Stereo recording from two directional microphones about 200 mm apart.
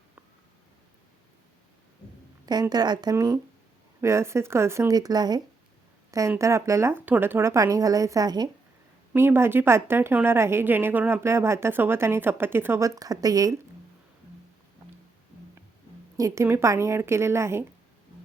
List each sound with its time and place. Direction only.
2.5 s a woman's voice: 20° right (ahead or behind)
16.1 s a woman's voice: 15° right (ahead or behind)